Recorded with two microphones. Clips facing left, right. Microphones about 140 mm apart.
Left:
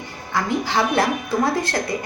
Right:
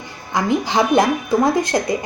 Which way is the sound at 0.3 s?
15° right (ahead or behind).